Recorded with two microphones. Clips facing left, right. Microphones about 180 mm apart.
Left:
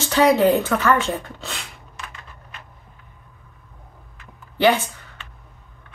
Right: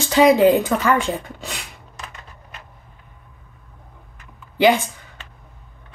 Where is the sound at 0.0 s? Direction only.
15° right (ahead or behind).